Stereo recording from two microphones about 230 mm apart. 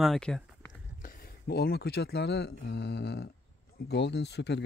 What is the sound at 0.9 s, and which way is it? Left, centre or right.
Speech, left.